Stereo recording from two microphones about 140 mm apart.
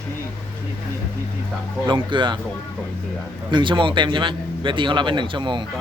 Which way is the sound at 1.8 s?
35° right (ahead or behind).